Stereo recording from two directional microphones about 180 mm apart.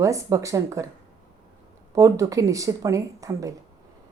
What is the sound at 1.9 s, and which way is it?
A woman's voice, 20° right (ahead or behind).